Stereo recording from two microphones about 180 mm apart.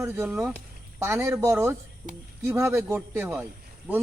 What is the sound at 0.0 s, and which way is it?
Speech, 10° right (ahead or behind).